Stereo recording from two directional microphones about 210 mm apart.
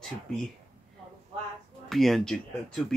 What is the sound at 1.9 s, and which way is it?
Speech, centre (ahead or behind).